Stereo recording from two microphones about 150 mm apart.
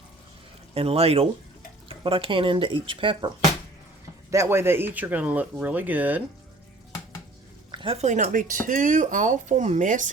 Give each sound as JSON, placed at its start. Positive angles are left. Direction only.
{"t": 0.7, "sound": "speech", "side_deg": -40}
{"t": 4.3, "sound": "speech", "side_deg": -20}
{"t": 7.7, "sound": "speech", "side_deg": -35}